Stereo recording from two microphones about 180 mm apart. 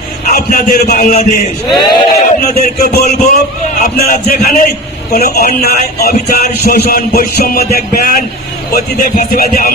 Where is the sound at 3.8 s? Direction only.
55° left (ahead or behind).